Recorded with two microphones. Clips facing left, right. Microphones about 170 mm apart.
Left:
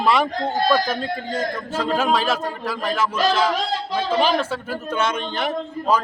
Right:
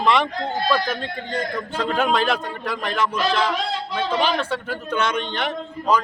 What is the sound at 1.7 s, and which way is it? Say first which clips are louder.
A man's voice: even; 5° left (ahead or behind).